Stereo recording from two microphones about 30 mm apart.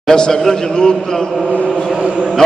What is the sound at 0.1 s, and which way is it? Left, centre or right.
Speech, left.